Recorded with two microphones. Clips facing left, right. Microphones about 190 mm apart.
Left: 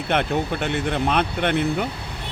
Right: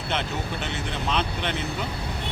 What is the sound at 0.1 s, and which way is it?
Speech, 55° left (ahead or behind).